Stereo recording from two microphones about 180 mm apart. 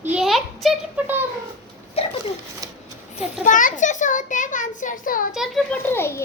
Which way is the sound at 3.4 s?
45° left (ahead or behind).